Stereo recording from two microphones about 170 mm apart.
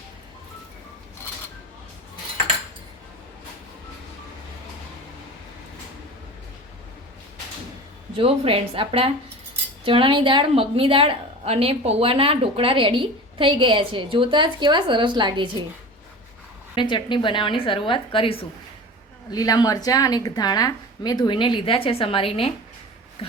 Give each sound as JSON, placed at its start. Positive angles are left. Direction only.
{"t": 8.1, "sound": "a woman's voice", "side_deg": -35}
{"t": 16.7, "sound": "a woman's voice", "side_deg": 30}